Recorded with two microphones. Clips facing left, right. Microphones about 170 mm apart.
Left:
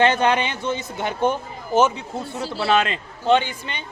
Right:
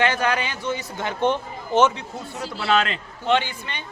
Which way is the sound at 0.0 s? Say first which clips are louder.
Left 4 dB; 25° left (ahead or behind).